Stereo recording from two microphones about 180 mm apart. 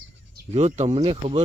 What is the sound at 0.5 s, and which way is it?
Speech, 35° right (ahead or behind).